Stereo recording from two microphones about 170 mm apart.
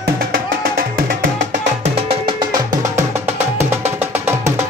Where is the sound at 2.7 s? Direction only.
15° right (ahead or behind).